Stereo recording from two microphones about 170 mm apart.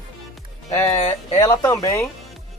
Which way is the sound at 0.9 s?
40° left (ahead or behind).